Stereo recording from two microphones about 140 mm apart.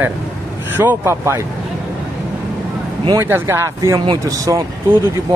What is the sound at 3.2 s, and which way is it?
Speech, 15° right (ahead or behind).